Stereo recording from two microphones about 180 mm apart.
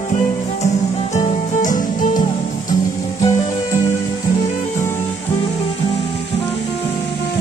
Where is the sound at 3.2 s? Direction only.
15° left (ahead or behind).